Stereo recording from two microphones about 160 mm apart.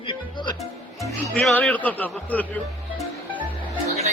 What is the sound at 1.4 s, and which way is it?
A man's voice, 5° left (ahead or behind).